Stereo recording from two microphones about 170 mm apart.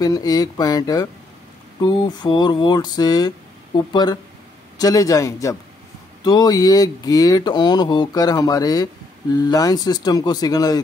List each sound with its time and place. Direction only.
0.0 s speech: 20° left (ahead or behind)